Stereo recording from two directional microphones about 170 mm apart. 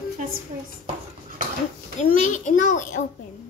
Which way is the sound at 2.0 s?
45° left (ahead or behind).